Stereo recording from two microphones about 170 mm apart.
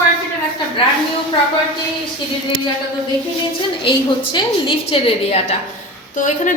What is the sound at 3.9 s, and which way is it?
A woman's voice, 30° left (ahead or behind).